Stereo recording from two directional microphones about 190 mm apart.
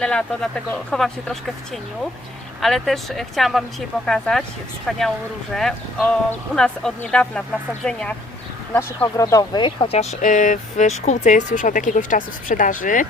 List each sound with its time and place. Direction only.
0.0 s speech: 5° left (ahead or behind); by 13.1 s 45° left (ahead or behind)